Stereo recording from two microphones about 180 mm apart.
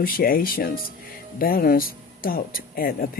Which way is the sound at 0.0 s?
55° left (ahead or behind).